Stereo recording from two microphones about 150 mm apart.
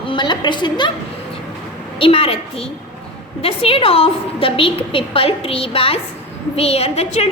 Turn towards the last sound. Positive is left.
turn(degrees=45)  # may be behind; listen again after turning